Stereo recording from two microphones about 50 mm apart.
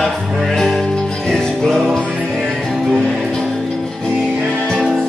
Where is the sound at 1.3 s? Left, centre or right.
Centre.